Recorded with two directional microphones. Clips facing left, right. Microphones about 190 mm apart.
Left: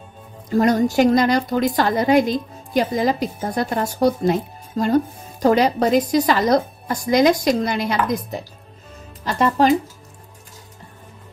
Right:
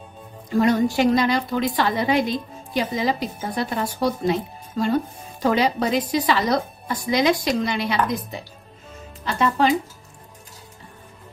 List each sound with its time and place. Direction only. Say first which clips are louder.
0.5 s a woman's voice: left 2 dB; 40° left (ahead or behind)
9.2 s speech: left 3 dB; 40° left (ahead or behind)